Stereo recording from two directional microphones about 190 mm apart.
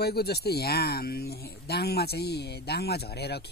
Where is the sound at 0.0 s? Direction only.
55° left (ahead or behind).